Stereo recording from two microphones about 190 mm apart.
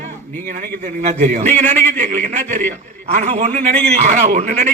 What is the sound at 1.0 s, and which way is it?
A man's voice, 40° right (ahead or behind).